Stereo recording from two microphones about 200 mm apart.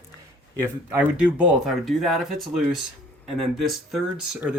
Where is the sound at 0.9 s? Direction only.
10° right (ahead or behind).